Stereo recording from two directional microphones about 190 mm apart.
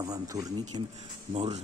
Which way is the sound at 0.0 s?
20° right (ahead or behind).